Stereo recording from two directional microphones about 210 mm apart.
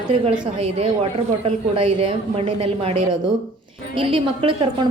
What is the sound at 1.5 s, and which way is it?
A woman's voice, 30° right (ahead or behind).